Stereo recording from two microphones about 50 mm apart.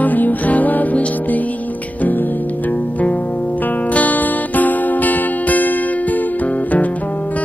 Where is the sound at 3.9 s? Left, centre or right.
Left.